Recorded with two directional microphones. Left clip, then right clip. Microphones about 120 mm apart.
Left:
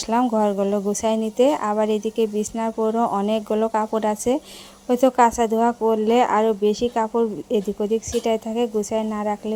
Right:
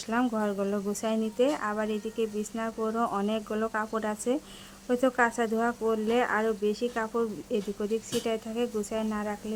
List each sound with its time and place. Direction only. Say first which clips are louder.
0.3 s speech: left 10 dB; 25° left (ahead or behind)